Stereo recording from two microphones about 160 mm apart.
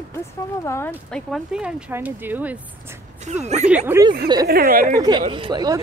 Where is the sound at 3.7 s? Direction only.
15° right (ahead or behind).